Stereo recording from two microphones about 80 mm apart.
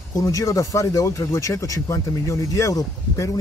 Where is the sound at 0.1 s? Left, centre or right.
Left.